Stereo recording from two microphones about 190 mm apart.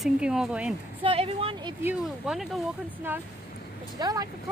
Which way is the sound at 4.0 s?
20° right (ahead or behind).